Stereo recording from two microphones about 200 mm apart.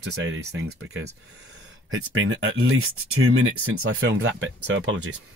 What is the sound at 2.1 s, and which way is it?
Speech, 75° right (ahead or behind).